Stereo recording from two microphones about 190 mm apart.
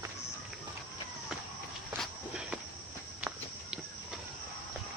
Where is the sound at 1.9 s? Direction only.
5° right (ahead or behind).